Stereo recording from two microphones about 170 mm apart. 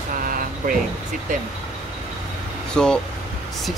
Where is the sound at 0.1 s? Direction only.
55° right (ahead or behind).